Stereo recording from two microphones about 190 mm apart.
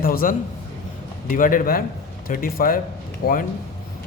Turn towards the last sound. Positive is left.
turn(degrees=55)  # may be behind; listen again after turning